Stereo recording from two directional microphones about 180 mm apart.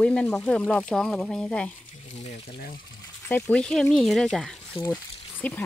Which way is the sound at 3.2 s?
10° left (ahead or behind).